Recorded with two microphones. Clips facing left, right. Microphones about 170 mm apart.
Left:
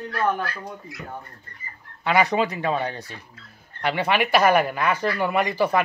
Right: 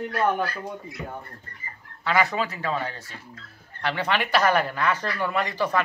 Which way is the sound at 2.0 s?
20° left (ahead or behind).